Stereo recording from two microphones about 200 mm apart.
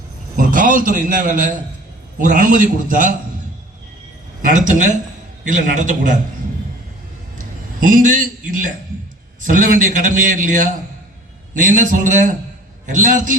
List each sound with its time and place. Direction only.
0.3 s a man's voice: 40° right (ahead or behind)
4.4 s a man's voice: 40° right (ahead or behind)
7.3 s a sound: 40° right (ahead or behind)
9.4 s a man's voice: 40° right (ahead or behind)